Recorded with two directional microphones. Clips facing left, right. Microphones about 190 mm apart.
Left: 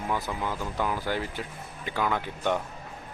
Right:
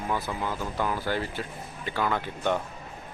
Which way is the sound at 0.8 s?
15° left (ahead or behind).